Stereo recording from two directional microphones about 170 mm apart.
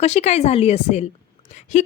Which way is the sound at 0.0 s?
40° left (ahead or behind).